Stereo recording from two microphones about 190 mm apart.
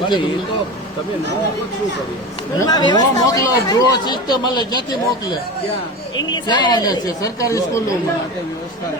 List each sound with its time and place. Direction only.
2.6 s speech: 20° left (ahead or behind)
6.3 s speech: 25° left (ahead or behind)